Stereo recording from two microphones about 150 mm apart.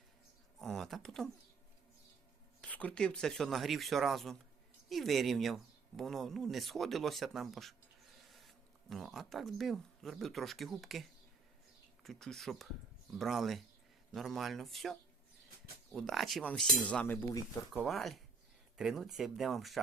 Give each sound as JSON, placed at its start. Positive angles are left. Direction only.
{"t": 0.6, "sound": "a sound", "side_deg": 0}
{"t": 2.6, "sound": "speech", "side_deg": 10}
{"t": 17.8, "sound": "speech", "side_deg": 0}